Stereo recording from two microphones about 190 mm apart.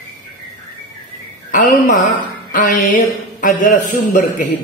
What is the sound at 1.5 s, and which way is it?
A man's voice, 45° left (ahead or behind).